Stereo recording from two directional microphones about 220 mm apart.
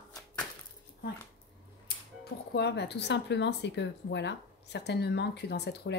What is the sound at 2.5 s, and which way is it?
Speech, 50° left (ahead or behind).